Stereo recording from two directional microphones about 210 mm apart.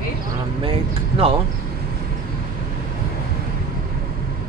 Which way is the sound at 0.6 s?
25° right (ahead or behind).